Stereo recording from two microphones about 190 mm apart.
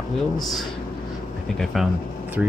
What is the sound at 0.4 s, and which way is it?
Speech, centre (ahead or behind).